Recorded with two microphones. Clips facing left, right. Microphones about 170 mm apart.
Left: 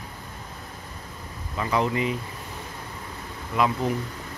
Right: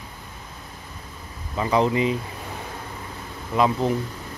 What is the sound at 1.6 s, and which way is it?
Speech, 25° right (ahead or behind).